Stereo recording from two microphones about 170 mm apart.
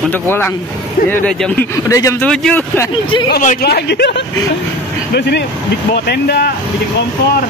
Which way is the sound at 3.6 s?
70° left (ahead or behind).